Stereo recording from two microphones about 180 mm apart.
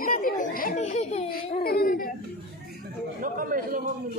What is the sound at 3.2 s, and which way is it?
Chatter, 50° right (ahead or behind).